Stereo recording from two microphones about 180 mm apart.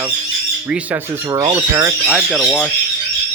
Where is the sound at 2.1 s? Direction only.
Centre (ahead or behind).